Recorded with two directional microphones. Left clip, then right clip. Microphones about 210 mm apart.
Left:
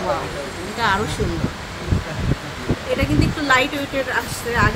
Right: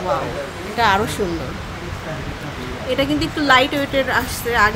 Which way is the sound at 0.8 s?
20° right (ahead or behind).